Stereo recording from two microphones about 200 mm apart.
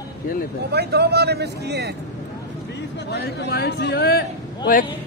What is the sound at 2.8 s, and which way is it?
A man's voice, 60° left (ahead or behind).